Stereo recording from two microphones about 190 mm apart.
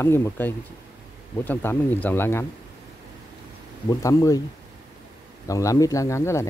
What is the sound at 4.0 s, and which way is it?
Speech, 15° left (ahead or behind).